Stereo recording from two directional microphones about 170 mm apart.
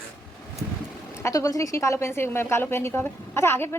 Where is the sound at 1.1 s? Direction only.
20° left (ahead or behind).